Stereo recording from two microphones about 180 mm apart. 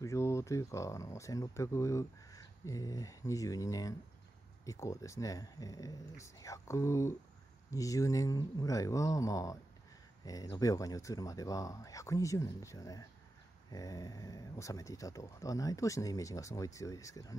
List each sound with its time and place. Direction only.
0.0 s speech: 15° left (ahead or behind)